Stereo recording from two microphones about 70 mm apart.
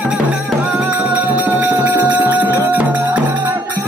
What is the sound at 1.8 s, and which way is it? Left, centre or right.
Music, right.